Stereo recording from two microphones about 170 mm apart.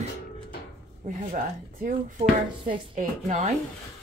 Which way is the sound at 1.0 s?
55° right (ahead or behind).